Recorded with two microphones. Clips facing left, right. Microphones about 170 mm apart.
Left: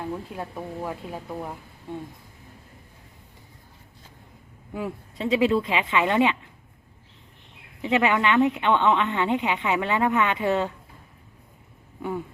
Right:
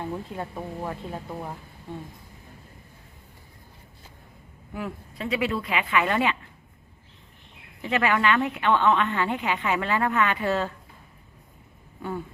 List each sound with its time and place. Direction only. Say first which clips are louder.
0.0 s speech: even; centre (ahead or behind)
4.7 s a woman's voice: left 2 dB; 20° left (ahead or behind)
7.8 s a woman's voice: left 2 dB; 20° left (ahead or behind)